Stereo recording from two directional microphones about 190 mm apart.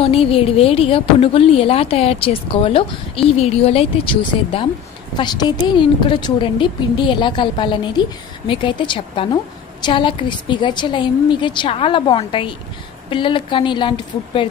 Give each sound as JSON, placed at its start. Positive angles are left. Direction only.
{"t": 0.0, "sound": "a woman's voice", "side_deg": 30}